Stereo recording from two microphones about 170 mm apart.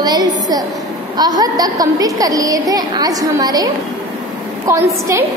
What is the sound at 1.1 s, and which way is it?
A woman's voice, 25° right (ahead or behind).